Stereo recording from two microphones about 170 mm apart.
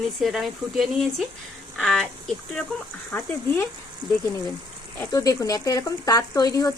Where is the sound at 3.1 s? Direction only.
10° left (ahead or behind).